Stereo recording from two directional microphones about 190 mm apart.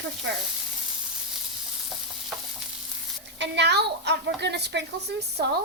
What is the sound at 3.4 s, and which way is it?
A woman's voice, 65° right (ahead or behind).